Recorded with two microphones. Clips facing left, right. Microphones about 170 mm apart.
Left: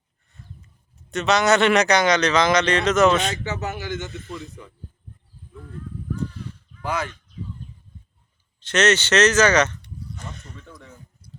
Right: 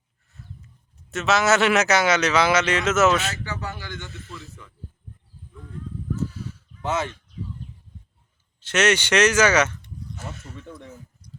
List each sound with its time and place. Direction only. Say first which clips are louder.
1.1 s speech: left 2 dB; centre (ahead or behind)
3.4 s speech: left 4 dB; 20° left (ahead or behind)
6.1 s crow: right 1 dB; 5° right (ahead or behind)
6.8 s speech: right 1 dB; 25° right (ahead or behind)
8.6 s speech: left 1 dB; 10° right (ahead or behind)
10.2 s bleat: right 2 dB; 5° right (ahead or behind)
11.2 s a sound: right 1 dB; 5° left (ahead or behind)